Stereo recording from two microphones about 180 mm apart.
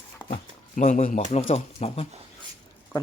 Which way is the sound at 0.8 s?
45° left (ahead or behind).